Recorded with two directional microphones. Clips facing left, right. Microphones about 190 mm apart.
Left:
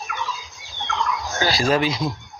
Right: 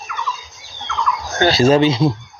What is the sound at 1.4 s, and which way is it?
Speech, 25° right (ahead or behind).